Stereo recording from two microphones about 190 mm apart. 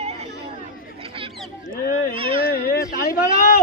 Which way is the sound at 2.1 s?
30° right (ahead or behind).